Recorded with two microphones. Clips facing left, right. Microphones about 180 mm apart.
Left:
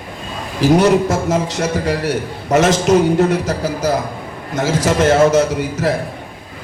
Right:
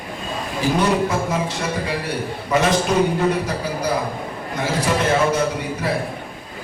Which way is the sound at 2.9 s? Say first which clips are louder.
Left 6 dB; 45° left (ahead or behind).